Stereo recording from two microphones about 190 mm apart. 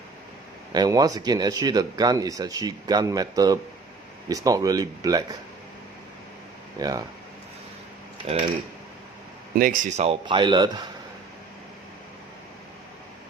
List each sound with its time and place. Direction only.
0.7 s speech: 20° right (ahead or behind)
6.7 s speech: 20° right (ahead or behind)
8.2 s speech: 25° right (ahead or behind)
9.6 s speech: 45° right (ahead or behind)
10.1 s speech: 25° right (ahead or behind)